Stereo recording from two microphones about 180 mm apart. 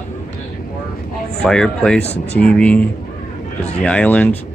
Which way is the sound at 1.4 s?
5° left (ahead or behind).